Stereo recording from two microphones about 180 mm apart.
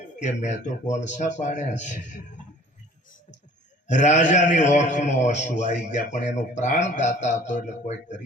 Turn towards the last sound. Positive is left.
turn(degrees=40)  # may be behind; listen again after turning